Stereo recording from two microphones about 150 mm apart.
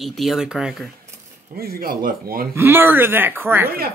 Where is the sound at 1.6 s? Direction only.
85° right.